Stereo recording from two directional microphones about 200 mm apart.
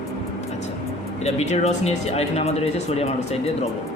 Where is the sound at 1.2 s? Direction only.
35° left (ahead or behind).